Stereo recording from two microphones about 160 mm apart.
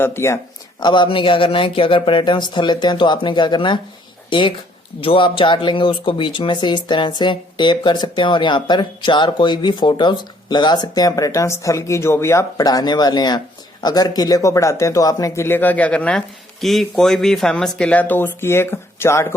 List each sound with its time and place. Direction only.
0.0 s speech: 15° left (ahead or behind)
0.8 s speech: 30° left (ahead or behind)